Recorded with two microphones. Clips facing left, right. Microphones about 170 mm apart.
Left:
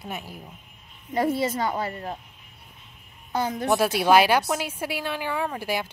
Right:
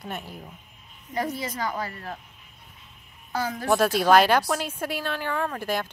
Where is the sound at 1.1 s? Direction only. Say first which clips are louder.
Left 5 dB; 25° left (ahead or behind).